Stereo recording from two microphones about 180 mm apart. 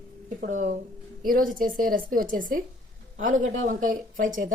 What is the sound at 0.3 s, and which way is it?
A man's voice, 50° right (ahead or behind).